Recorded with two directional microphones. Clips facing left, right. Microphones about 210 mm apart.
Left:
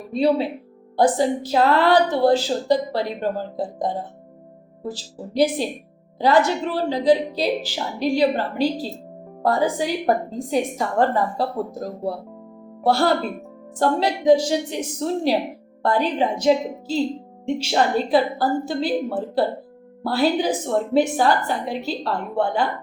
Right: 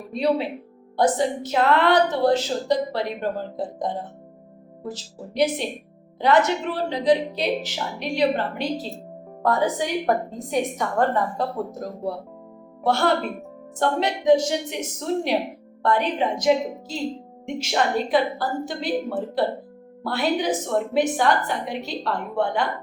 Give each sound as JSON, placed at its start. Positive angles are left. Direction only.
{"t": 0.1, "sound": "a woman's voice", "side_deg": 30}